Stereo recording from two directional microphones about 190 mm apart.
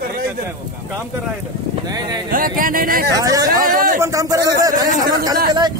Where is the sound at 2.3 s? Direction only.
45° right (ahead or behind).